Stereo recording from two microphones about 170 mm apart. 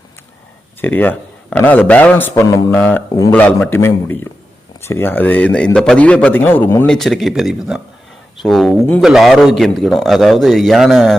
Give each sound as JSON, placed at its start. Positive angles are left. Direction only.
{"t": 0.8, "sound": "a man's voice", "side_deg": 10}
{"t": 6.9, "sound": "a man's voice", "side_deg": 0}